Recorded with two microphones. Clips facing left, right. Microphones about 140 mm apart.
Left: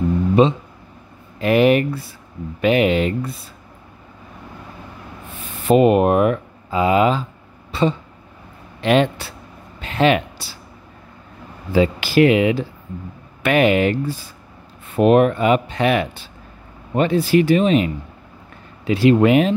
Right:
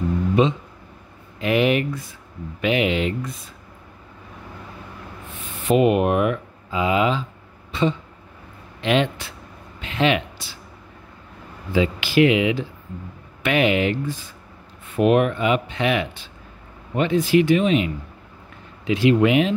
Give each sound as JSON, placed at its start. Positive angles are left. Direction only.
{"t": 0.4, "sound": "speech", "side_deg": 35}
{"t": 5.7, "sound": "speech", "side_deg": 40}
{"t": 11.7, "sound": "speech", "side_deg": 40}